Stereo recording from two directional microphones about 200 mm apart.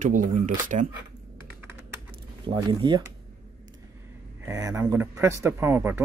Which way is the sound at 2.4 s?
25° right (ahead or behind).